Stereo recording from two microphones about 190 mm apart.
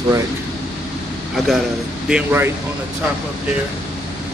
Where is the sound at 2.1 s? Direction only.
10° right (ahead or behind).